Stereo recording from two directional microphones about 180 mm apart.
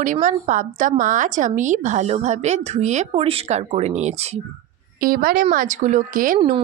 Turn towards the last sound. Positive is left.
turn(degrees=-50)  # may be behind; listen again after turning